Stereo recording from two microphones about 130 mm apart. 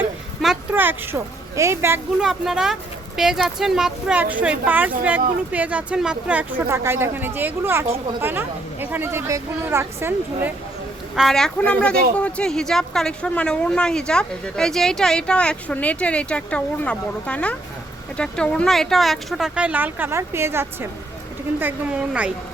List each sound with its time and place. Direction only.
0.7 s speech: 15° right (ahead or behind)
2.2 s speech: 5° right (ahead or behind)
11.1 s speech: centre (ahead or behind)